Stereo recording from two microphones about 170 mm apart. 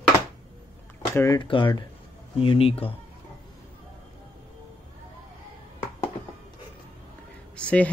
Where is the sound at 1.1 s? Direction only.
15° left (ahead or behind).